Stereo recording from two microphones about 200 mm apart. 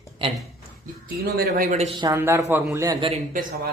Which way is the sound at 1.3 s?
55° right (ahead or behind).